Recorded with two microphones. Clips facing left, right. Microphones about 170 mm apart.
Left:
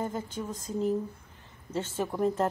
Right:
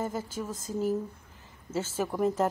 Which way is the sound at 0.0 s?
5° right (ahead or behind).